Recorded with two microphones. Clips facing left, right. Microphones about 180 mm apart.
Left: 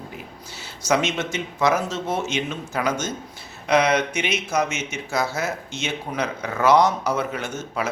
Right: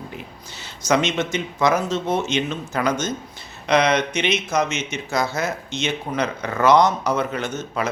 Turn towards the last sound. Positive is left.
turn(degrees=10)  # may be behind; listen again after turning